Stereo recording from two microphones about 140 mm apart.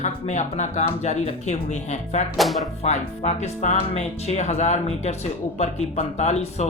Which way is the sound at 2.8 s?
55° left (ahead or behind).